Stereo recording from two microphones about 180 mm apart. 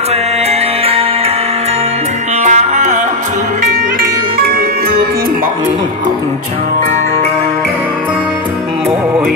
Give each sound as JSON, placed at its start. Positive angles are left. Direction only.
{"t": 0.5, "sound": "music", "side_deg": -30}
{"t": 2.4, "sound": "music", "side_deg": -40}
{"t": 4.5, "sound": "music", "side_deg": -55}